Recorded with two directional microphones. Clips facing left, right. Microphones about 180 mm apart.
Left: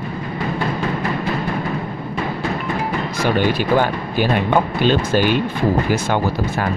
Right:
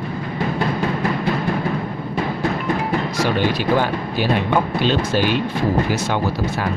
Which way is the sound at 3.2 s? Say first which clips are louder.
Left 3 dB; 55° left (ahead or behind).